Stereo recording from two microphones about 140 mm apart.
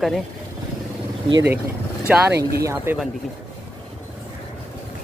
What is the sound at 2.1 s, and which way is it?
Speech, 10° right (ahead or behind).